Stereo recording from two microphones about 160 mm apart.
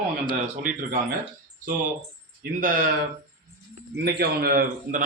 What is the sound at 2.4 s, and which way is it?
Speech, 60° right (ahead or behind).